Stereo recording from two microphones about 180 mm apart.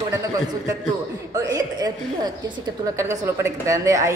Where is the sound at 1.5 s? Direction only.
20° right (ahead or behind).